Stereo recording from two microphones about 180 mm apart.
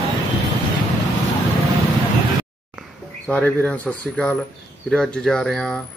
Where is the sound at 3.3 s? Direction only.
10° left (ahead or behind).